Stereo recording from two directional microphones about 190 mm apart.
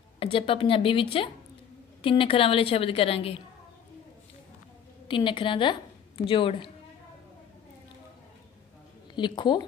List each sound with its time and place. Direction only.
0.2 s a woman's voice: 30° left (ahead or behind)
5.0 s a woman's voice: 25° left (ahead or behind)
9.1 s a woman's voice: 25° left (ahead or behind)